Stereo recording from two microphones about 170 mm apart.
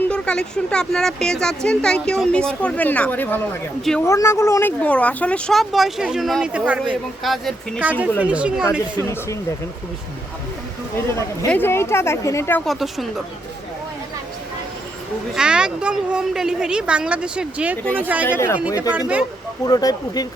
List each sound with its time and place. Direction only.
0.1 s a woman's voice: 5° left (ahead or behind)
9.0 s speech: 15° left (ahead or behind)
11.4 s speech: 10° left (ahead or behind)
12.6 s a woman's voice: centre (ahead or behind)
15.4 s a woman's voice: 5° right (ahead or behind)
18.3 s speech: 15° left (ahead or behind)
18.8 s speech: 10° right (ahead or behind)
19.6 s speech: 20° left (ahead or behind)